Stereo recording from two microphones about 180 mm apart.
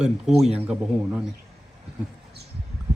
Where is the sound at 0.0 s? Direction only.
Centre (ahead or behind).